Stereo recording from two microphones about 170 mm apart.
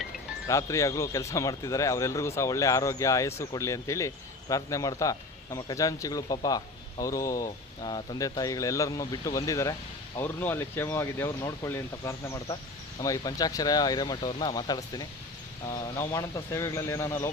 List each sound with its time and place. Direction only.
0.4 s speech: 15° left (ahead or behind)